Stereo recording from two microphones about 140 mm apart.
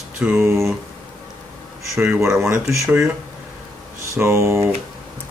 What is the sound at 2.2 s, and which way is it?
Speech, 5° right (ahead or behind).